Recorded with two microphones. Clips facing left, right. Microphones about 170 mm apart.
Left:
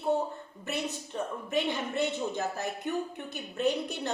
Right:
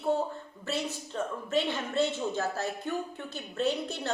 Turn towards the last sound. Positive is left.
turn(degrees=15)  # may be behind; listen again after turning